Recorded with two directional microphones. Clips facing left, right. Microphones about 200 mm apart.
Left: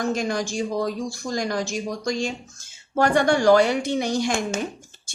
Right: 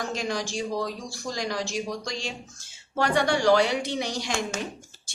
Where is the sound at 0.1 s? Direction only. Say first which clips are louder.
Left 5 dB; 50° left (ahead or behind).